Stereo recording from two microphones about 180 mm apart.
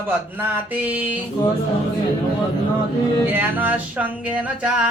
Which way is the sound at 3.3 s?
10° right (ahead or behind).